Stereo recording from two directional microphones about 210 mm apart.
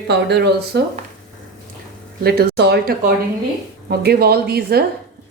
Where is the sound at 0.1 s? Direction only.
55° right (ahead or behind).